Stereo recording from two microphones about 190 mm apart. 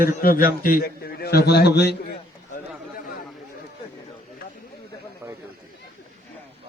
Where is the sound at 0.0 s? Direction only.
50° left (ahead or behind).